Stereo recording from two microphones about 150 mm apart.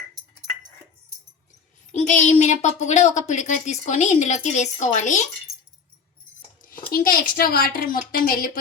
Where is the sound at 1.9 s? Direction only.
55° left (ahead or behind).